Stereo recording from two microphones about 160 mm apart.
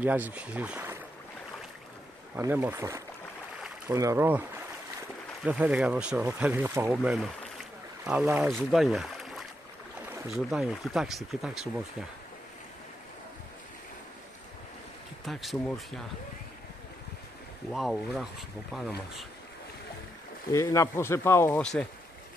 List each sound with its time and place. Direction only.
0.0 s speech: 10° right (ahead or behind)
2.3 s speech: 10° right (ahead or behind)
15.2 s speech: centre (ahead or behind)
17.6 s speech: centre (ahead or behind)
20.5 s speech: 20° left (ahead or behind)